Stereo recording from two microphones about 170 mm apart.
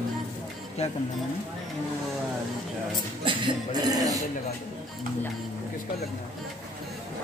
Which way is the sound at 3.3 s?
25° right (ahead or behind).